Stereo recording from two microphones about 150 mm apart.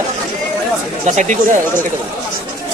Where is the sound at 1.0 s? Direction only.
55° right (ahead or behind).